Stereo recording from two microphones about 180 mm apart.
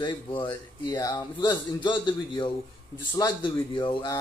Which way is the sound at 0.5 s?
20° left (ahead or behind).